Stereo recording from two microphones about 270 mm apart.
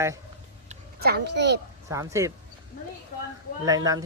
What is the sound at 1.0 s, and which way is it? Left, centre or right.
Speech, right.